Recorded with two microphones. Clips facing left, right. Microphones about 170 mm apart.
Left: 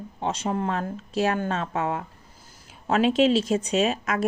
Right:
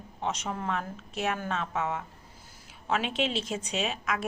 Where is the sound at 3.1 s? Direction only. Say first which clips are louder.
Left 10 dB; 40° left (ahead or behind).